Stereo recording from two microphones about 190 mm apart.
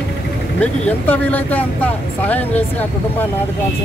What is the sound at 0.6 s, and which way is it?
Speech, 10° left (ahead or behind).